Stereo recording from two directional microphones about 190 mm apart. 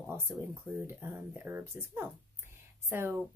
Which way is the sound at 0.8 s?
10° right (ahead or behind).